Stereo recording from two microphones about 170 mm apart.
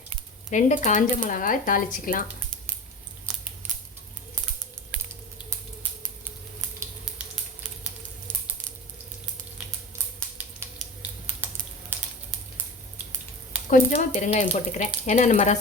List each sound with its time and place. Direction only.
0.5 s speech: 45° left (ahead or behind)
13.7 s speech: 50° left (ahead or behind)